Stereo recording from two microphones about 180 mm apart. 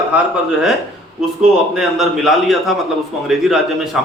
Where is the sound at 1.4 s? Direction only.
5° right (ahead or behind).